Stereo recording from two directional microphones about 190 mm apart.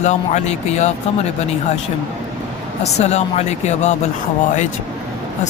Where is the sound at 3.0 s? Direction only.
35° left (ahead or behind).